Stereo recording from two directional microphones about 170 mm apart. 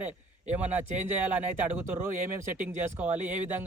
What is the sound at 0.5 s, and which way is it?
Speech, 10° right (ahead or behind).